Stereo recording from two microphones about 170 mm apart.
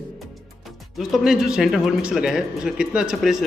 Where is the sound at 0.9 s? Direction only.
Centre (ahead or behind).